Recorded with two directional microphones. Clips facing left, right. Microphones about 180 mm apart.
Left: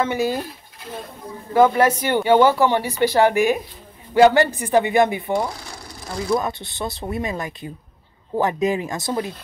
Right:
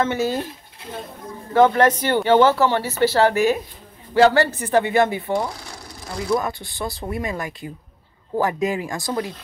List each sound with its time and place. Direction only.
0.0 s speech: 10° left (ahead or behind)
1.5 s speech: 10° left (ahead or behind)
5.3 s sewing machine: centre (ahead or behind)
6.4 s speech: 20° left (ahead or behind)